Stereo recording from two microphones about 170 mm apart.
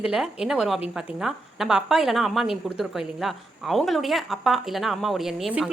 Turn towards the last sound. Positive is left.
turn(degrees=0)  # may be behind; listen again after turning